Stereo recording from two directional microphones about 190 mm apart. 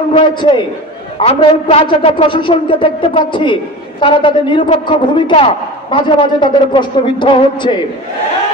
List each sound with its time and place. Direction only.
0.1 s a man's voice: 25° left (ahead or behind)